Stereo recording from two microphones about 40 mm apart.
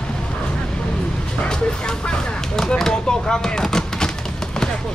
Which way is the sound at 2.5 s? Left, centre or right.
Centre.